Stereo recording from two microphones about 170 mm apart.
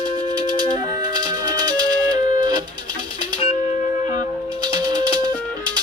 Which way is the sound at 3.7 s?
45° left (ahead or behind).